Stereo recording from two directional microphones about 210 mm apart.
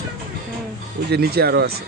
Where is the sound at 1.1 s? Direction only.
50° right (ahead or behind).